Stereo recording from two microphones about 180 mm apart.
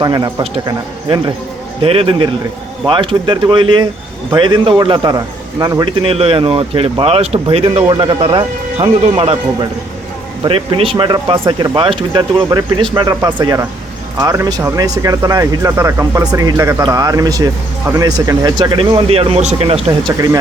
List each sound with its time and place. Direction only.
0.0 s speech: 25° right (ahead or behind)
1.8 s speech: 30° right (ahead or behind)
6.0 s speech: 30° right (ahead or behind)